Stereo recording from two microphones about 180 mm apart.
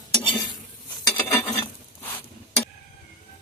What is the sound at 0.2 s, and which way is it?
Stir, 30° left (ahead or behind).